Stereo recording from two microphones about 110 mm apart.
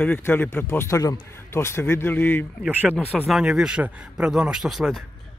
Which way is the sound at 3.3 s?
5° right (ahead or behind).